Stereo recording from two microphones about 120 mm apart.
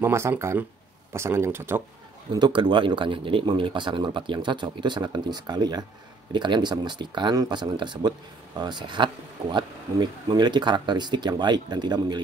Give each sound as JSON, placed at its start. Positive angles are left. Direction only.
{"t": 0.0, "sound": "speech", "side_deg": -20}
{"t": 2.3, "sound": "speech", "side_deg": -40}